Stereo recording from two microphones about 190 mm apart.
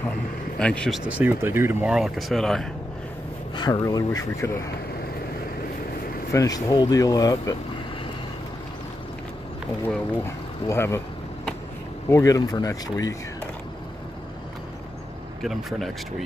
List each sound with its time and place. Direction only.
0.6 s speech: 5° left (ahead or behind)
1.2 s speech: 15° right (ahead or behind)
3.5 s speech: 20° left (ahead or behind)
6.3 s speech: 20° left (ahead or behind)
9.8 s speech: 15° left (ahead or behind)
12.1 s speech: 15° left (ahead or behind)